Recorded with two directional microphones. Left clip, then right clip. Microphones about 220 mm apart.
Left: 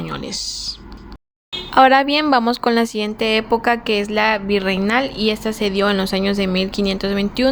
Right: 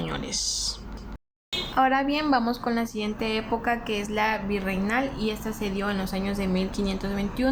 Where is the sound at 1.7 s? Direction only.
50° left (ahead or behind).